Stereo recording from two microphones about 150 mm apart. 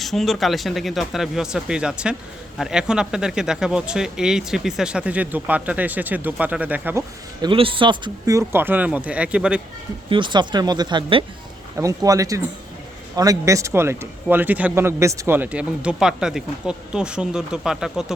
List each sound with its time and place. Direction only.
0.0 s speech: centre (ahead or behind)
7.4 s speech: 35° right (ahead or behind); by 9.6 s 5° right (ahead or behind)
10.1 s speech: 35° right (ahead or behind)
11.8 s speech: 20° right (ahead or behind); by 18.0 s 5° right (ahead or behind)